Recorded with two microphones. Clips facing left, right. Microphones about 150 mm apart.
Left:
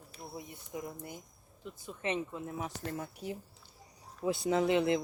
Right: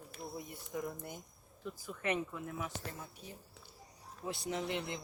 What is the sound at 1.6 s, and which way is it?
Speech, 25° left (ahead or behind).